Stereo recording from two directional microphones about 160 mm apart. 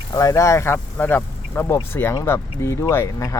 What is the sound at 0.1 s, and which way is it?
Speech, 20° left (ahead or behind).